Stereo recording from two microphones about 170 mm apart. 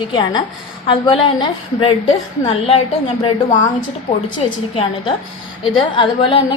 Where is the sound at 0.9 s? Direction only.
30° left (ahead or behind).